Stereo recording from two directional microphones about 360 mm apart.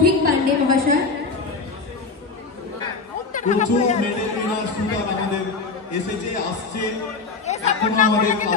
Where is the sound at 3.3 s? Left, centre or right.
Centre.